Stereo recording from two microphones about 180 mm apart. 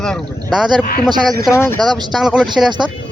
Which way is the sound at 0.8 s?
55° left (ahead or behind).